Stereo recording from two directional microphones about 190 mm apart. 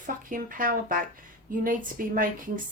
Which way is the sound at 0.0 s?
45° right (ahead or behind).